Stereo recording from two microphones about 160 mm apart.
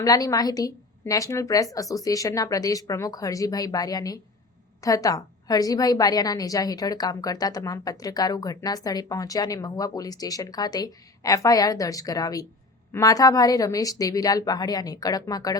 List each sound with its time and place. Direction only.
0.0 s a woman's voice: 20° left (ahead or behind)